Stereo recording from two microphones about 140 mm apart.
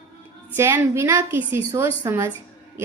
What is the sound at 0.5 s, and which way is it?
A woman's voice, 20° right (ahead or behind).